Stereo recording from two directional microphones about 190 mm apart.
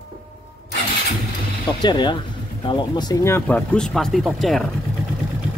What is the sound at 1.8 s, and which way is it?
Speech, 25° left (ahead or behind).